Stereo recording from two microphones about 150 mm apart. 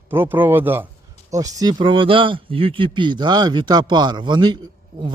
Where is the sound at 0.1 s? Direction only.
15° right (ahead or behind).